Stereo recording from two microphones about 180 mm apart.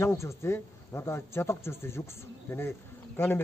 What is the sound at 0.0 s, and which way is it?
Speech, 15° left (ahead or behind).